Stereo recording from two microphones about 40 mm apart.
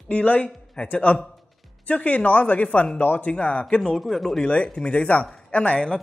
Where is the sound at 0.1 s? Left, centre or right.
Left.